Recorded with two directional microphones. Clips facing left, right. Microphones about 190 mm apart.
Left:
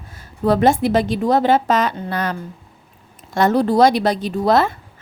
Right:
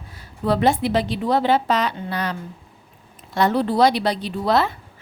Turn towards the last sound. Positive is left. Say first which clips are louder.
# left 4 dB
turn(degrees=45)  # may be behind; listen again after turning